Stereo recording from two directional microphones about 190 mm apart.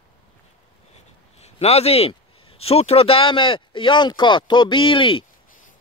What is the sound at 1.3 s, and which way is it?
Speech, 35° left (ahead or behind).